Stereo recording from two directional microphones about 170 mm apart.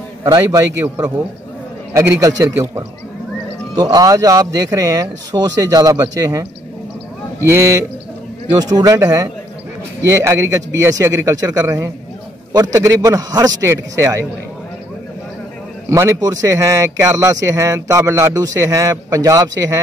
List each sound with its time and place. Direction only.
0.2 s a man's voice: 20° right (ahead or behind)
7.4 s a man's voice: 15° right (ahead or behind)
15.9 s speech: 20° right (ahead or behind)